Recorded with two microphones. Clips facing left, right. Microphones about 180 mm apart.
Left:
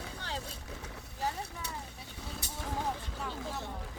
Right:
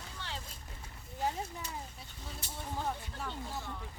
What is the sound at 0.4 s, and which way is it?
Boat, 75° left (ahead or behind).